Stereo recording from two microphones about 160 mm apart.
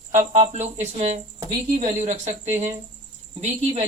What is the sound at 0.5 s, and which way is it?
Speech, 40° right (ahead or behind).